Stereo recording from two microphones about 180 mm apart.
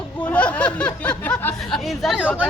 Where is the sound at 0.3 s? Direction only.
5° left (ahead or behind).